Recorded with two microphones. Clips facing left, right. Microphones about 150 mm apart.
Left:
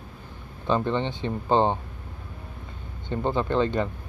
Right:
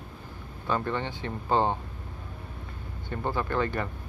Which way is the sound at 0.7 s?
20° left (ahead or behind).